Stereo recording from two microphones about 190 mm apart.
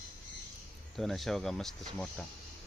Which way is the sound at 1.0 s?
Centre (ahead or behind).